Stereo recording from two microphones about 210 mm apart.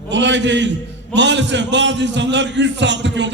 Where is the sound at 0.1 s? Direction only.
60° right (ahead or behind).